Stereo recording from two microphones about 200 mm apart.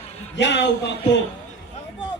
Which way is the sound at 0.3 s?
60° left (ahead or behind).